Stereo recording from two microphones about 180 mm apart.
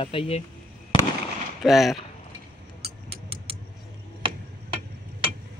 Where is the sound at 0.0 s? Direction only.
30° left (ahead or behind).